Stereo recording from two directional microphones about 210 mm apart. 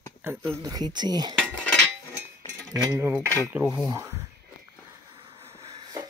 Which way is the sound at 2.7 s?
15° right (ahead or behind).